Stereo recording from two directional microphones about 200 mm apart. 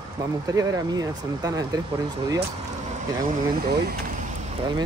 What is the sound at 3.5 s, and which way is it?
Speech, 50° right (ahead or behind).